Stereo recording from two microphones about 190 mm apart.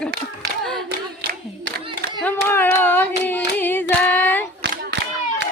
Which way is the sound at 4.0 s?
10° left (ahead or behind).